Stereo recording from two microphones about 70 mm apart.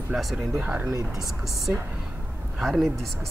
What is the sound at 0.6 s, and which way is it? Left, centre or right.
Speech, centre.